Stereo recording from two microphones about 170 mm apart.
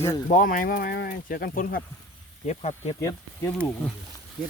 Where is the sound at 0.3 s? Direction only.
50° left (ahead or behind).